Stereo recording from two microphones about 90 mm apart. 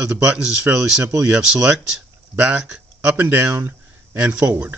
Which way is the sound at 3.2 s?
20° right (ahead or behind).